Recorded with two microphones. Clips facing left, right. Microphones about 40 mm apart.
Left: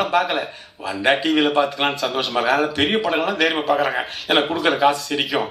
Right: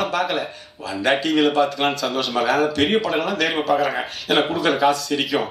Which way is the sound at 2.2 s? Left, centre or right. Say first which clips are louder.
Even; centre.